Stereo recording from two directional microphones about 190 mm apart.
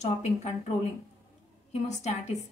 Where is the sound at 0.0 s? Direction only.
35° left (ahead or behind).